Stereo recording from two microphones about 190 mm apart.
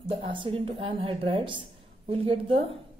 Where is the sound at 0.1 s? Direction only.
30° right (ahead or behind).